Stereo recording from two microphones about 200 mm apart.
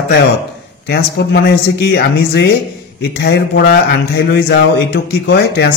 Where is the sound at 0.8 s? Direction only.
55° left (ahead or behind).